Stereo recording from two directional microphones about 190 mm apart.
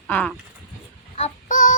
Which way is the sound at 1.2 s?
40° left (ahead or behind).